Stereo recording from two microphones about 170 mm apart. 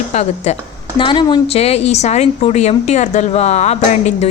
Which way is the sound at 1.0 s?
25° left (ahead or behind).